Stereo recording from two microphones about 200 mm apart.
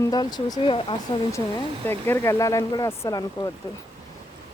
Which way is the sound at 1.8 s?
10° left (ahead or behind).